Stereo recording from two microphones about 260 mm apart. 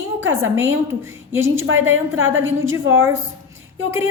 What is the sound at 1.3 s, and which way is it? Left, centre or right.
Speech, centre.